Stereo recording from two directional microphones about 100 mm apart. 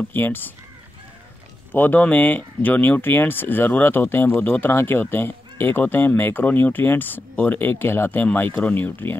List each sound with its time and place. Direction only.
0.1 s speech: 20° left (ahead or behind)
1.7 s speech: 20° left (ahead or behind)